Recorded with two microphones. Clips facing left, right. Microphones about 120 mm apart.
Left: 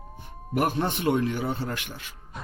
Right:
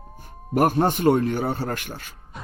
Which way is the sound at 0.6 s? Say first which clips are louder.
Right 6 dB; 45° right (ahead or behind).